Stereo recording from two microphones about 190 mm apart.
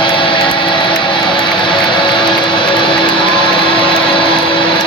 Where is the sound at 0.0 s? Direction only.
25° left (ahead or behind).